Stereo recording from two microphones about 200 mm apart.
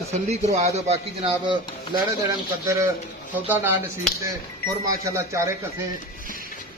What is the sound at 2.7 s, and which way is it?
Speech, 15° right (ahead or behind).